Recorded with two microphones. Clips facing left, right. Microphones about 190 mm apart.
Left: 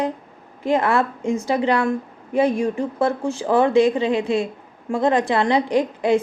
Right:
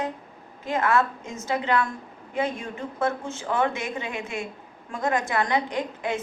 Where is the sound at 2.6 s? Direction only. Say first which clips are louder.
Left 7 dB; 35° left (ahead or behind).